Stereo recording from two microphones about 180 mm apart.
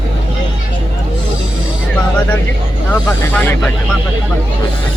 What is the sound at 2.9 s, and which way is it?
Snake, 10° left (ahead or behind).